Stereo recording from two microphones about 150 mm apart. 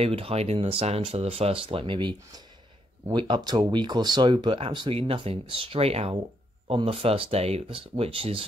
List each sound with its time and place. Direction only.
0.0 s speech: 40° right (ahead or behind)